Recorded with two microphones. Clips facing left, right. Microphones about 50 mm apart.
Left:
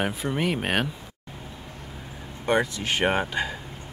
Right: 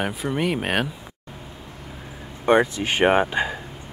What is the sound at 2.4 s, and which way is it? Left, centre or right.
Speech, right.